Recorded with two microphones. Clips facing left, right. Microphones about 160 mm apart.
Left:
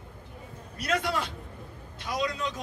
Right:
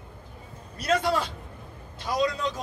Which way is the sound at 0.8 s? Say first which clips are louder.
Right 4 dB; 35° right (ahead or behind).